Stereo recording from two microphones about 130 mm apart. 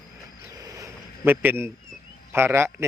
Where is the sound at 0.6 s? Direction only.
25° right (ahead or behind).